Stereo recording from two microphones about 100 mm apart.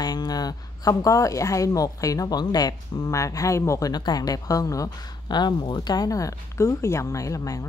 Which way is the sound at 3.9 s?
40° left (ahead or behind).